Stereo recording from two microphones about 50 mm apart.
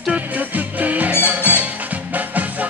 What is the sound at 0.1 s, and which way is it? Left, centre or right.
Music, right.